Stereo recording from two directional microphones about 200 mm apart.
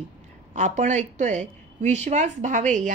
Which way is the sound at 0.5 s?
35° right (ahead or behind).